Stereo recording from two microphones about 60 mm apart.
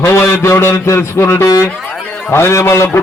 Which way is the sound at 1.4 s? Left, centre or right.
Left.